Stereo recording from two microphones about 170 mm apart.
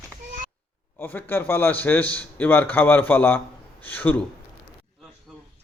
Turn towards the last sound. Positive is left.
turn(degrees=10)  # may be behind; listen again after turning